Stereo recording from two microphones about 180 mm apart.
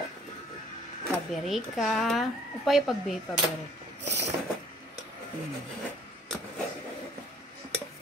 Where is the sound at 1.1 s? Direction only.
Centre (ahead or behind).